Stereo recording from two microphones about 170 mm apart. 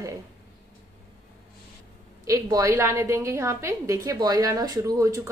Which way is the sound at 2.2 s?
20° right (ahead or behind).